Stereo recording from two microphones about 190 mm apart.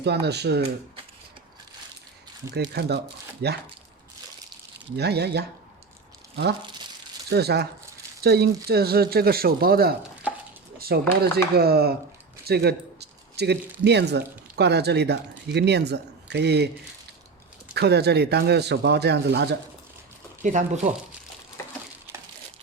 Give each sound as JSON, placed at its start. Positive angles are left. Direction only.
{"t": 0.0, "sound": "a man's voice", "side_deg": -60}
{"t": 2.5, "sound": "a man's voice", "side_deg": -60}
{"t": 4.9, "sound": "a man's voice", "side_deg": -60}
{"t": 6.6, "sound": "speech", "side_deg": -25}
{"t": 7.3, "sound": "a man's voice", "side_deg": -60}
{"t": 10.8, "sound": "a sound", "side_deg": -55}
{"t": 11.5, "sound": "a man's voice", "side_deg": -55}
{"t": 17.7, "sound": "a man's voice", "side_deg": -60}
{"t": 20.4, "sound": "speech", "side_deg": -40}